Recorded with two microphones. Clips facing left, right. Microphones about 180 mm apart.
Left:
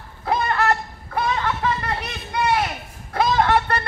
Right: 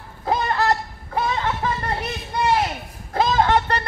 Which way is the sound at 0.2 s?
20° right (ahead or behind).